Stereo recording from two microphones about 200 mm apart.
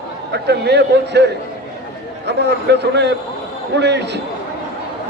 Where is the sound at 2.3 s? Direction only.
55° right (ahead or behind).